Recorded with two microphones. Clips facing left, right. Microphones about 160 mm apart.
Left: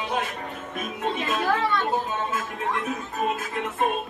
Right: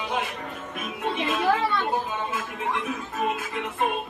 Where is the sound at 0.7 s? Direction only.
40° left (ahead or behind).